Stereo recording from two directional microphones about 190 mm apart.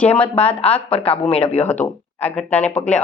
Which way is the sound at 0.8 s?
30° left (ahead or behind).